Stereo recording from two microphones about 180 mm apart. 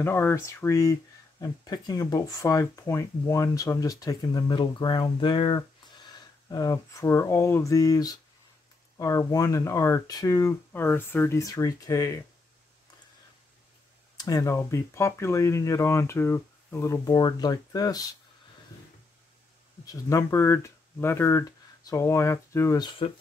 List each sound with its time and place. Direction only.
0.0 s speech: 15° left (ahead or behind)
14.1 s speech: 20° left (ahead or behind)
19.9 s speech: 15° left (ahead or behind)